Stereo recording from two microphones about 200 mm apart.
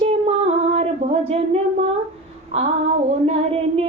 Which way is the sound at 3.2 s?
30° right (ahead or behind).